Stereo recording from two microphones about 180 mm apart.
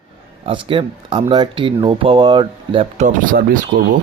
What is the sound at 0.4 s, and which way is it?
Speech, 30° right (ahead or behind).